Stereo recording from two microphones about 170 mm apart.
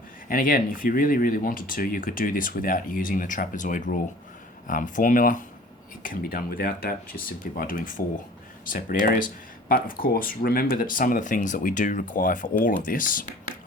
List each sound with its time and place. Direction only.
0.3 s speech: 55° left (ahead or behind)